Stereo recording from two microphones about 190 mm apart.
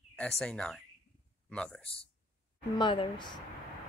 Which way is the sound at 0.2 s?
5° left (ahead or behind).